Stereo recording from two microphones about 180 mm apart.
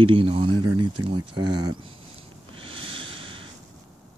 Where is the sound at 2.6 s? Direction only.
30° right (ahead or behind).